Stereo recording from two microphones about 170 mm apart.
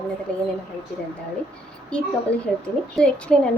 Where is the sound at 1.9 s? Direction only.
5° left (ahead or behind).